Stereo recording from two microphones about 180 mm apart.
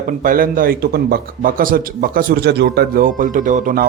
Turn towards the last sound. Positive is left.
turn(degrees=-45)  # may be behind; listen again after turning